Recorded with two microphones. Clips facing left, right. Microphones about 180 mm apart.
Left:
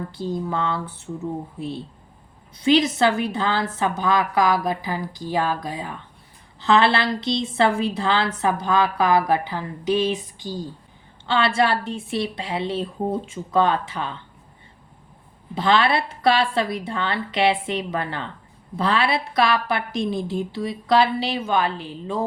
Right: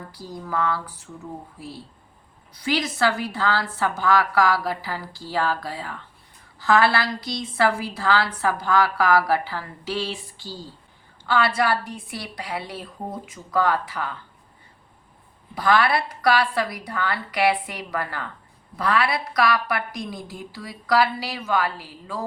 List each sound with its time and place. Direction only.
0.1 s a woman's voice: 25° left (ahead or behind)
15.5 s a woman's voice: 25° left (ahead or behind)